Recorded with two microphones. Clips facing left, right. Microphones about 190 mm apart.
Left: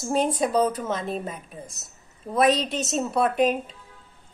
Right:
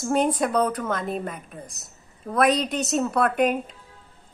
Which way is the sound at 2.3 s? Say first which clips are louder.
Even; 25° left (ahead or behind).